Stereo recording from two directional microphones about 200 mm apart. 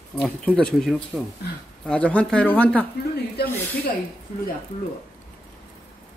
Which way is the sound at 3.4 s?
55° left (ahead or behind).